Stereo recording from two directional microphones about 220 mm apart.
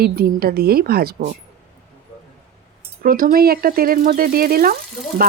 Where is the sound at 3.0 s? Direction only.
40° right (ahead or behind).